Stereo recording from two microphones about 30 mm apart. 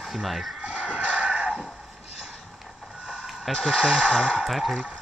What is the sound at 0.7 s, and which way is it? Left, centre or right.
Fowl, right.